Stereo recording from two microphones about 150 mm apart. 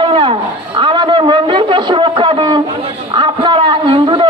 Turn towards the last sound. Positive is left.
turn(degrees=-35)  # may be behind; listen again after turning